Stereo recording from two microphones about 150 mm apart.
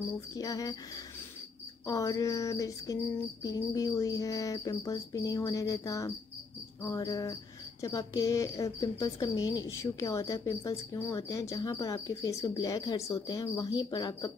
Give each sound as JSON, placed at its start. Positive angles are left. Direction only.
{"t": 0.4, "sound": "a woman's voice", "side_deg": 25}
{"t": 1.9, "sound": "a woman's voice", "side_deg": 20}